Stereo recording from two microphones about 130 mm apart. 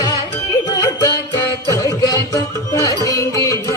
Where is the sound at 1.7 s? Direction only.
30° left (ahead or behind).